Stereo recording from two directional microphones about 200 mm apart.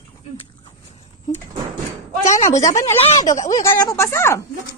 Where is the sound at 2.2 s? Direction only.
35° left (ahead or behind).